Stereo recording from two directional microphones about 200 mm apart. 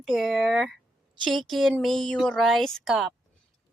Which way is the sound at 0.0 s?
Centre (ahead or behind).